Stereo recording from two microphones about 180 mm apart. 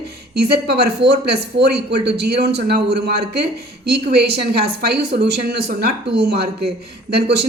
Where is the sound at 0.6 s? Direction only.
65° right (ahead or behind).